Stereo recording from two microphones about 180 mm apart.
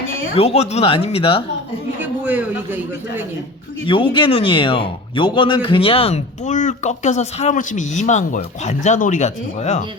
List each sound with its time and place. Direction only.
0.3 s a man's voice: 35° left (ahead or behind)
2.0 s a man's voice: 10° right (ahead or behind)
3.8 s a man's voice: 25° left (ahead or behind)